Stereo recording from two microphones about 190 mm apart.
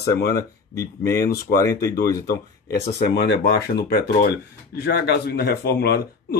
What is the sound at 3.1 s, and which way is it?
Speech, 60° left (ahead or behind).